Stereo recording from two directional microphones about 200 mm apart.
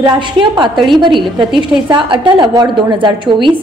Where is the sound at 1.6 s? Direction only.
25° right (ahead or behind).